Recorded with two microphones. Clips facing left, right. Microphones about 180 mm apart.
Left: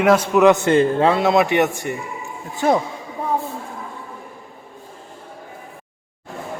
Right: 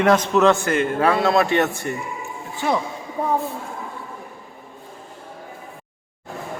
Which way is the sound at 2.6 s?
45° left (ahead or behind).